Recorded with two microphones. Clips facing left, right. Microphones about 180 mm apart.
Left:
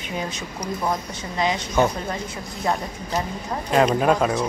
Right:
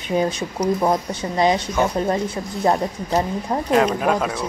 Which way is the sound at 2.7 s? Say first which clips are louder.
Right 5 dB; 35° right (ahead or behind).